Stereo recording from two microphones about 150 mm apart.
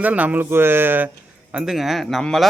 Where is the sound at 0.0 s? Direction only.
10° right (ahead or behind).